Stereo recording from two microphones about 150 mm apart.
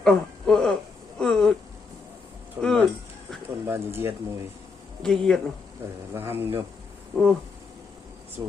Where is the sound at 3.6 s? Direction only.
15° right (ahead or behind).